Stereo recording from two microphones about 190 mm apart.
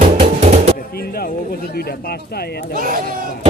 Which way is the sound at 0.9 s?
55° left (ahead or behind).